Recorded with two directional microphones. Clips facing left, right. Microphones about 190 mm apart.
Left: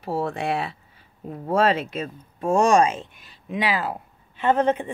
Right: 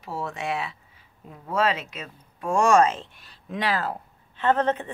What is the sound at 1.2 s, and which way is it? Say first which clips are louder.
Speech: left 5 dB; 40° left (ahead or behind).